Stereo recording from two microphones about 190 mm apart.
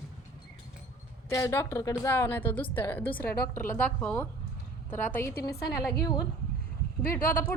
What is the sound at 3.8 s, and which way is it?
A woman's voice, 5° left (ahead or behind).